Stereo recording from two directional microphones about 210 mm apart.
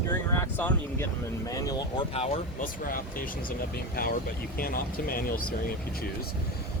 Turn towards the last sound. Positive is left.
turn(degrees=45)  # may be behind; listen again after turning